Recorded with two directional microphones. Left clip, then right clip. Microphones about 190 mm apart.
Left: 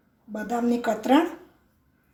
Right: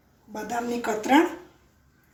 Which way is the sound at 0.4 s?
35° left (ahead or behind).